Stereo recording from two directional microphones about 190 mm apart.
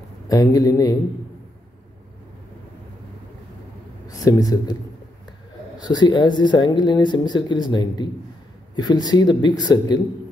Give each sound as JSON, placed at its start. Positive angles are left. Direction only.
{"t": 0.3, "sound": "speech", "side_deg": 20}
{"t": 4.2, "sound": "speech", "side_deg": 20}
{"t": 5.8, "sound": "speech", "side_deg": 20}